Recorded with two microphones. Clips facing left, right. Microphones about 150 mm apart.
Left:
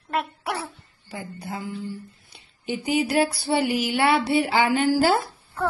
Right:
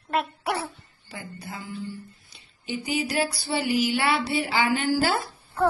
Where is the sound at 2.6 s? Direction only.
55° left (ahead or behind).